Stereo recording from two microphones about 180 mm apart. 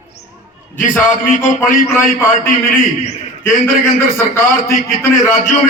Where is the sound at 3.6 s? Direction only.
15° left (ahead or behind).